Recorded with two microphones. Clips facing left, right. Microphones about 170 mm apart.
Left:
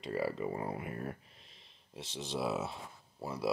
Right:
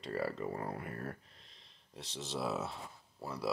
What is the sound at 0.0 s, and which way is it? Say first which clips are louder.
Speech: left 2 dB; 5° left (ahead or behind).